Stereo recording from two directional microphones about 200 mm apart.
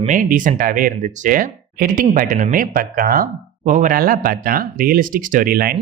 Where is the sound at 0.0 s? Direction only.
40° right (ahead or behind).